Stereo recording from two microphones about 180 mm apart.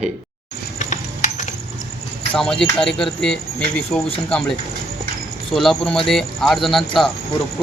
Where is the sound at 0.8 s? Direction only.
45° left (ahead or behind).